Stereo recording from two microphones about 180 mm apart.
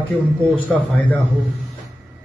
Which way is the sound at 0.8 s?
10° left (ahead or behind).